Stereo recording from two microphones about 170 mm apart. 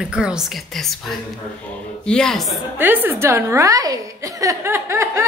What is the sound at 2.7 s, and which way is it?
A woman's voice, 10° right (ahead or behind).